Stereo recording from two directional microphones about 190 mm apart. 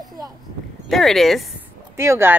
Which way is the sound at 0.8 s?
Centre (ahead or behind).